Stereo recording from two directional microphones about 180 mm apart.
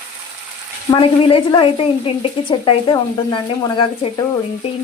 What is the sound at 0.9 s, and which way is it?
A woman's voice, 25° left (ahead or behind).